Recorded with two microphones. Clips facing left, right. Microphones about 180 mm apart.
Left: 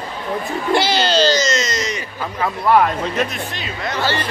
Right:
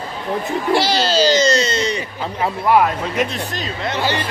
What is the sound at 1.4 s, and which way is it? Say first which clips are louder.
Speech: right 4 dB; 30° right (ahead or behind).